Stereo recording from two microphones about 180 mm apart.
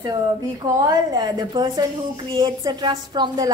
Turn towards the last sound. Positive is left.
turn(degrees=-20)  # may be behind; listen again after turning